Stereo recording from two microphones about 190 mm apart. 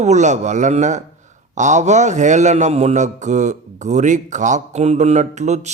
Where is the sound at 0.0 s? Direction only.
40° right (ahead or behind).